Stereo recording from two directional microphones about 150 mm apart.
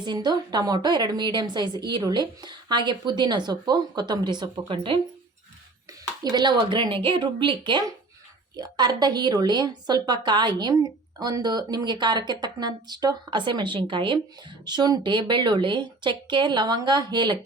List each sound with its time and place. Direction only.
0.0 s speech: 30° right (ahead or behind)
6.2 s speech: 30° right (ahead or behind)